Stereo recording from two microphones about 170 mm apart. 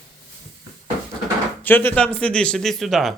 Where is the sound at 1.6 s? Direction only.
10° left (ahead or behind).